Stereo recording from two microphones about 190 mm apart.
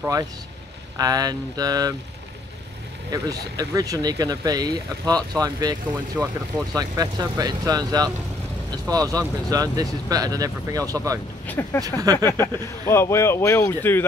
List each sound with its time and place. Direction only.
0.0 s speech: 20° right (ahead or behind)
3.1 s speech: 20° right (ahead or behind)
6.2 s speech: 5° right (ahead or behind)
6.7 s speech: 20° right (ahead or behind)
11.4 s speech: 10° left (ahead or behind)
12.0 s speech: 20° right (ahead or behind)
12.3 s speech: 10° left (ahead or behind)